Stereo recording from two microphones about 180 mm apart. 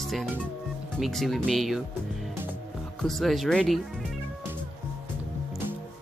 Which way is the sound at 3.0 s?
Centre (ahead or behind).